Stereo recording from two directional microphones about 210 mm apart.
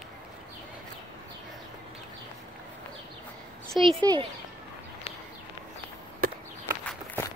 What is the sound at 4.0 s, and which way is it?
Speech, 20° right (ahead or behind).